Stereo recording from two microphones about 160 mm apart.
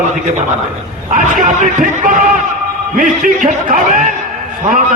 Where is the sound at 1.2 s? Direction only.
55° right (ahead or behind).